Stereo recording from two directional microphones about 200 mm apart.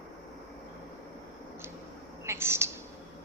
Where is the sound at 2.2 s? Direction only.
10° right (ahead or behind).